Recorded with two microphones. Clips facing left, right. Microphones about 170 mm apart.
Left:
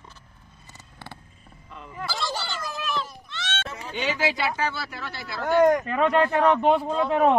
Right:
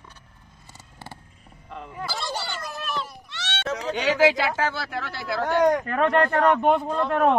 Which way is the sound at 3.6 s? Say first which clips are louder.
Right 7 dB; 90° right.